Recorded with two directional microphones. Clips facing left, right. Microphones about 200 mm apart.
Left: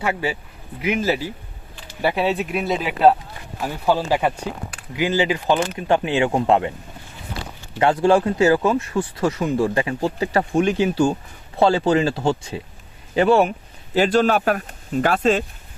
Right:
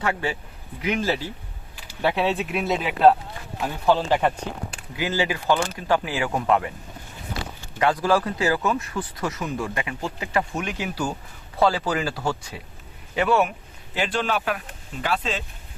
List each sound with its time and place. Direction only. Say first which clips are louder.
0.0 s speech: left 2 dB; 10° left (ahead or behind)
4.9 s speech: left 5 dB; 20° left (ahead or behind)
7.8 s a man's voice: left 5 dB; 25° left (ahead or behind); by 15.4 s 50° left (ahead or behind)